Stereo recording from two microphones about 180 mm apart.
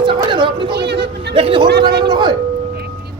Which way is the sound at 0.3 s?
25° right (ahead or behind).